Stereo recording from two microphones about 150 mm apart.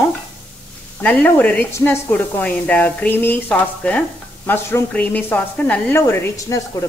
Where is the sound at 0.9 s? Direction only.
10° left (ahead or behind).